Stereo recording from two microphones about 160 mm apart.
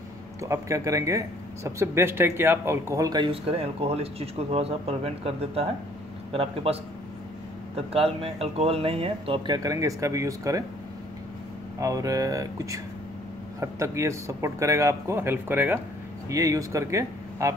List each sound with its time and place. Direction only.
0.4 s speech: 20° right (ahead or behind)
3.3 s speech: 35° right (ahead or behind)
9.6 s speech: 20° right (ahead or behind)
11.8 s speech: 20° right (ahead or behind)